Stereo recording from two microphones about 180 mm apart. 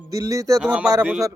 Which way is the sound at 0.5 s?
Centre (ahead or behind).